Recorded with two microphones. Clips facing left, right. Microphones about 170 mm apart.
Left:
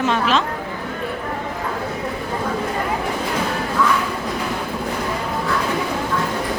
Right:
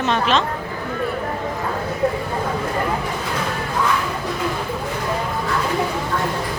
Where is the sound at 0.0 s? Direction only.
5° left (ahead or behind).